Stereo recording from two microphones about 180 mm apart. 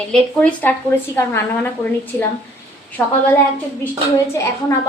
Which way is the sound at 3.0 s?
10° left (ahead or behind).